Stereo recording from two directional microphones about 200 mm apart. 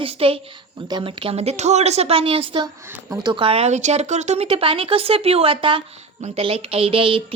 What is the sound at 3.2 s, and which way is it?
A woman's voice, 25° right (ahead or behind).